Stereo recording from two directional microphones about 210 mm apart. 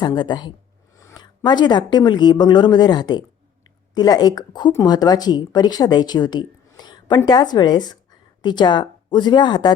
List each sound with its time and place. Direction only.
0.0 s speech: 20° left (ahead or behind)